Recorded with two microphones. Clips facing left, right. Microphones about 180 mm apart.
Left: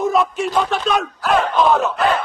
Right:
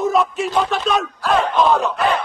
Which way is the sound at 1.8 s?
Centre (ahead or behind).